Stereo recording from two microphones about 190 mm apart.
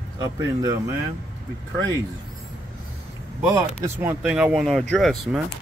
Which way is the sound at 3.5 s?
15° right (ahead or behind).